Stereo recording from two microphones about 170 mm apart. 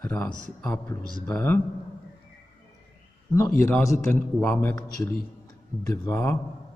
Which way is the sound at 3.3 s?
15° left (ahead or behind).